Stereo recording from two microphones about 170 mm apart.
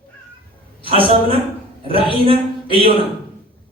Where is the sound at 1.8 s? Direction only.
35° right (ahead or behind).